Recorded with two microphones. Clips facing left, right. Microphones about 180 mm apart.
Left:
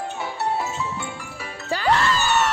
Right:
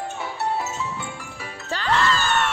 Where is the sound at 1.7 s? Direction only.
10° left (ahead or behind).